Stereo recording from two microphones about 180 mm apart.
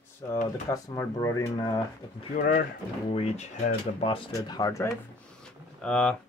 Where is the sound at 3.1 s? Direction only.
35° left (ahead or behind).